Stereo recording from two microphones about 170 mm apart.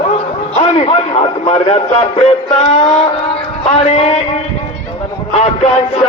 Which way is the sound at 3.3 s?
35° left (ahead or behind).